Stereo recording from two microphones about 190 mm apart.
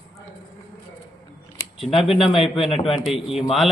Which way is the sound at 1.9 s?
30° left (ahead or behind).